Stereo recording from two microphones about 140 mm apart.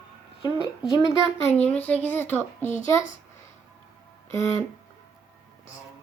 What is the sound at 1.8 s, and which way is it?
Speech, 10° left (ahead or behind).